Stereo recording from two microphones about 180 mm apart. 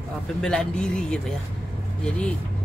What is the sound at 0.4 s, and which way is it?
Speech, 5° left (ahead or behind).